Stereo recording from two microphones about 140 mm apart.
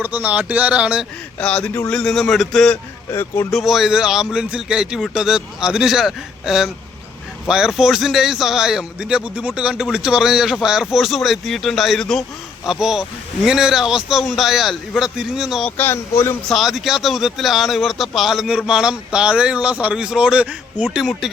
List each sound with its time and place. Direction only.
0.0 s speech: 10° right (ahead or behind)
1.4 s speech: 5° left (ahead or behind)
3.1 s speech: 20° left (ahead or behind)
3.5 s speech: centre (ahead or behind)
15.8 s speech: 15° left (ahead or behind)
16.5 s speech: centre (ahead or behind)